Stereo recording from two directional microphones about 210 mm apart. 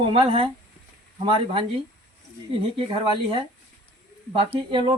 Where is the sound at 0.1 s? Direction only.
25° right (ahead or behind).